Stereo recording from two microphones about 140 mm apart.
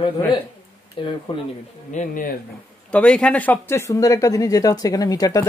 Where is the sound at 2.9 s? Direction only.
10° left (ahead or behind).